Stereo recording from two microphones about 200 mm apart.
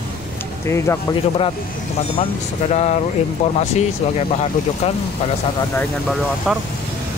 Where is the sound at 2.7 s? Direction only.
35° left (ahead or behind).